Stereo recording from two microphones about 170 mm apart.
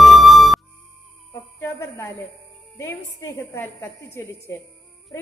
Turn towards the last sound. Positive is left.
turn(degrees=15)  # may be behind; listen again after turning